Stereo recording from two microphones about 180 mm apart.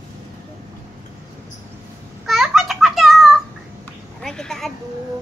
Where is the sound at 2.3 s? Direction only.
Centre (ahead or behind).